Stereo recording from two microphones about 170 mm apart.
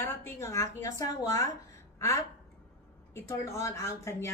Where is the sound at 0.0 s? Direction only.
15° left (ahead or behind).